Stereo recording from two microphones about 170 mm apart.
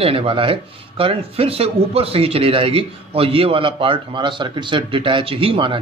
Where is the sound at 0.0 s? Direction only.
35° right (ahead or behind).